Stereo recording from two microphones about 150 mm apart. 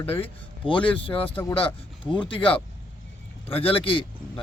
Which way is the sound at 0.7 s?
35° left (ahead or behind).